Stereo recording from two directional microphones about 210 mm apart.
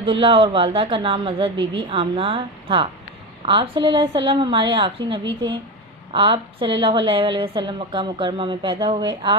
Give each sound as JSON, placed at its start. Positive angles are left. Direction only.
{"t": 0.0, "sound": "a woman's voice", "side_deg": -25}